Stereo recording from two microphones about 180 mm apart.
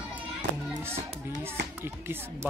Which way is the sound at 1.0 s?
40° right (ahead or behind).